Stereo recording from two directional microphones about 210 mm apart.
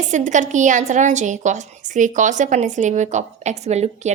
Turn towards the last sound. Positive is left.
turn(degrees=-30)  # may be behind; listen again after turning